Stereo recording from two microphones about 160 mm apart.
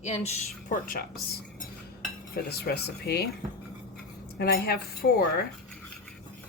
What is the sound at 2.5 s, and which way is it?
Speech, 85° left.